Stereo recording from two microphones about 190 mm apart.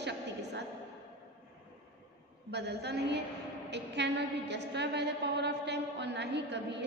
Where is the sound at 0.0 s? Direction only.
65° right (ahead or behind).